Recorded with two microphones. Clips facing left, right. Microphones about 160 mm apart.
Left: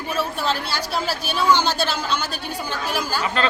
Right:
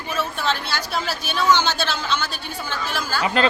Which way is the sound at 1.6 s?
40° left (ahead or behind).